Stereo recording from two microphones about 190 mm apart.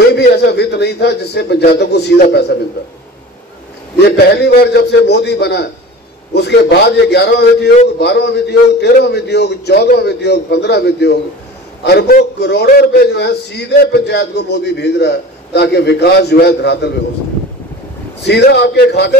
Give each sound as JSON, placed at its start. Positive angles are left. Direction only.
{"t": 0.1, "sound": "a man's voice", "side_deg": 60}
{"t": 4.2, "sound": "a man's voice", "side_deg": 55}
{"t": 18.2, "sound": "a man's voice", "side_deg": 65}